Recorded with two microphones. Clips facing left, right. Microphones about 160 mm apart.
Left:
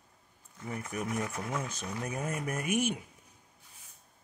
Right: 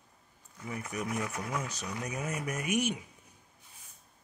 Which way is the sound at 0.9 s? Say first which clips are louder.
Even; 45° left (ahead or behind).